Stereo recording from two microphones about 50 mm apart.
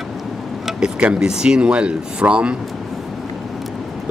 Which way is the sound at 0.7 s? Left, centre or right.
Centre.